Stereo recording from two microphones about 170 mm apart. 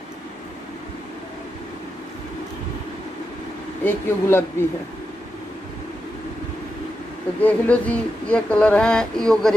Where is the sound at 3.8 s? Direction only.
15° left (ahead or behind).